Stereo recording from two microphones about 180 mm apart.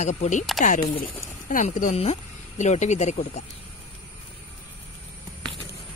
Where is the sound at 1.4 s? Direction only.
45° left (ahead or behind).